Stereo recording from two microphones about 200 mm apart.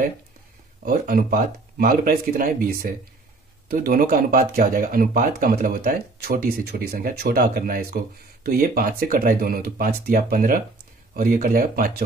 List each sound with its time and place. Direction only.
0.8 s speech: 45° right (ahead or behind)